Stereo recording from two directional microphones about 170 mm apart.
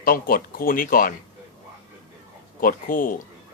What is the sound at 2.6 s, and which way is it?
Speech, 55° left (ahead or behind).